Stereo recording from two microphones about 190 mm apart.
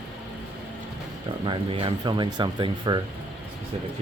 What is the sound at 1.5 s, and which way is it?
Speech, 25° right (ahead or behind).